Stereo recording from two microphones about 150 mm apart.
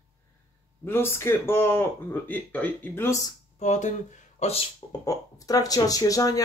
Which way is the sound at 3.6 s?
55° left (ahead or behind).